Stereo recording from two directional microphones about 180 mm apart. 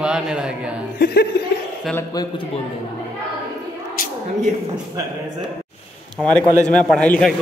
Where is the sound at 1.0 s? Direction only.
60° left (ahead or behind).